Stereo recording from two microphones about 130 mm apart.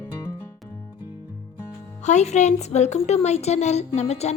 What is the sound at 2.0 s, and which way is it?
A woman's voice, 60° left (ahead or behind).